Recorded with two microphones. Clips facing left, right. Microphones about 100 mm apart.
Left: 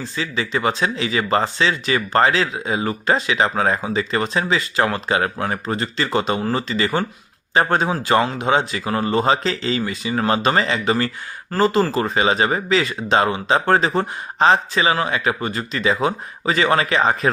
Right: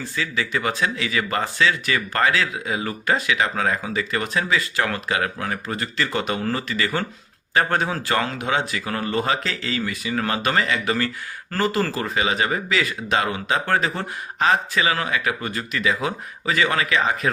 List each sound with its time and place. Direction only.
0.0 s speech: 25° left (ahead or behind)